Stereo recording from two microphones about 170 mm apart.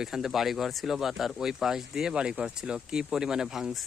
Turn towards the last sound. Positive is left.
turn(degrees=0)  # may be behind; listen again after turning